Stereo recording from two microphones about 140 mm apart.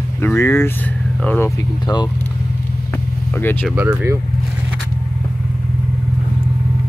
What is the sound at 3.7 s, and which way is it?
Speech, 20° right (ahead or behind).